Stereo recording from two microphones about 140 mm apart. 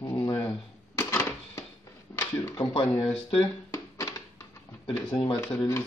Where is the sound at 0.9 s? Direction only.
20° left (ahead or behind).